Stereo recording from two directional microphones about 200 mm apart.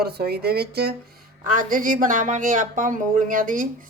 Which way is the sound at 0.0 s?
50° right (ahead or behind).